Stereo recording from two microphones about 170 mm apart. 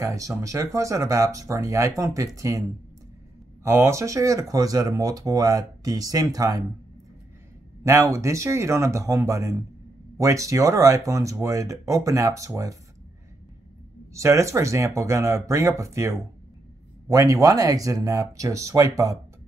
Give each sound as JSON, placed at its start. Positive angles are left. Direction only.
{"t": 0.0, "sound": "speech", "side_deg": -20}
{"t": 3.6, "sound": "speech", "side_deg": -15}
{"t": 7.8, "sound": "speech", "side_deg": -15}
{"t": 14.1, "sound": "speech", "side_deg": -15}